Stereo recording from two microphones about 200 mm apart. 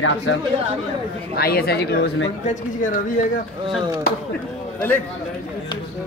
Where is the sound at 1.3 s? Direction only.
50° left (ahead or behind).